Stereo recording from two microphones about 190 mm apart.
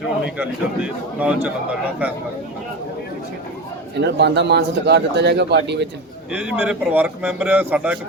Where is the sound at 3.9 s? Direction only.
65° right (ahead or behind).